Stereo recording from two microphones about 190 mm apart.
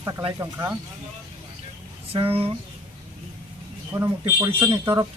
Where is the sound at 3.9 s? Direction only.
15° right (ahead or behind).